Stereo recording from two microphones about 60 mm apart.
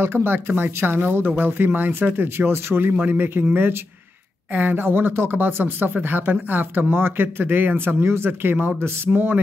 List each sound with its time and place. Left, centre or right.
0.0 s speech: right
4.6 s speech: right